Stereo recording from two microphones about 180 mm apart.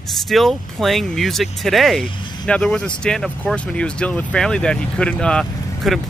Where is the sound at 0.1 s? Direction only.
Centre (ahead or behind).